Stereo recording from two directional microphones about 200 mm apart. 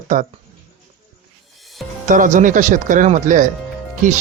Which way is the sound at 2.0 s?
40° right (ahead or behind).